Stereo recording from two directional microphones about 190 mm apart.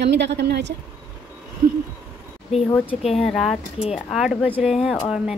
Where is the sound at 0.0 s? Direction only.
65° right (ahead or behind).